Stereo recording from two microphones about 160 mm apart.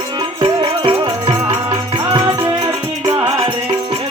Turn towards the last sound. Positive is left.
turn(degrees=-25)  # may be behind; listen again after turning